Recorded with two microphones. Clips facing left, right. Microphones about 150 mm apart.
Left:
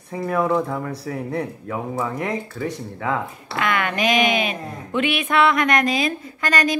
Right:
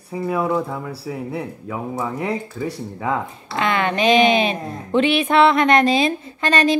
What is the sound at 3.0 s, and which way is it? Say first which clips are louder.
Speech: right 1 dB; 25° right (ahead or behind).